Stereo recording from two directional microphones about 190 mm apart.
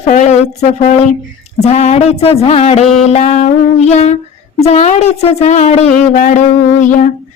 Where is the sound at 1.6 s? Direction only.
35° left (ahead or behind).